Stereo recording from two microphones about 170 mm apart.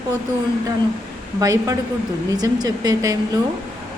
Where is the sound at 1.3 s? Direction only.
20° right (ahead or behind).